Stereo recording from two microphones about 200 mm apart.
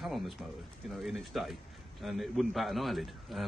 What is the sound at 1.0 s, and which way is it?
A man's voice, centre (ahead or behind).